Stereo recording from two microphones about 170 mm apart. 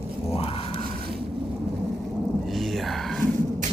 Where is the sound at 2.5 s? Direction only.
Centre (ahead or behind).